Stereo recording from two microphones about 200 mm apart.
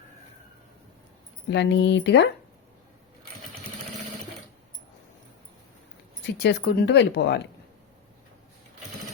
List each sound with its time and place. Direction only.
1.5 s speech: 60° left (ahead or behind)
6.4 s speech: 60° left (ahead or behind)